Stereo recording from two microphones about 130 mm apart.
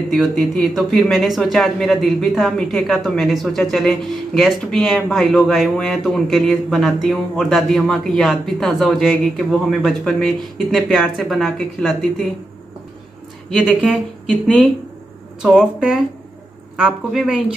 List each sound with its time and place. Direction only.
0.1 s speech: centre (ahead or behind)
15.4 s a woman's voice: 5° right (ahead or behind)